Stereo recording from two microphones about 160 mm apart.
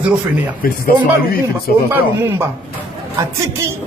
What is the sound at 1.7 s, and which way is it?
Speech, 65° left (ahead or behind).